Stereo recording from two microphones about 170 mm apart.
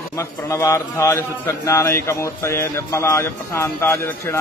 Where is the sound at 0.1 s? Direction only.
15° left (ahead or behind).